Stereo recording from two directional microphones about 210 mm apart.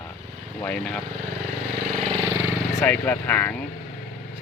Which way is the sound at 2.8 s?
10° left (ahead or behind).